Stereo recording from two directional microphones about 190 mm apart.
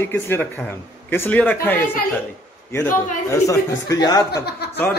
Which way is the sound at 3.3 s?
15° left (ahead or behind).